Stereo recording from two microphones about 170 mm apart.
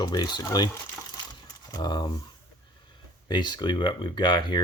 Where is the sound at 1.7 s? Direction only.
25° left (ahead or behind).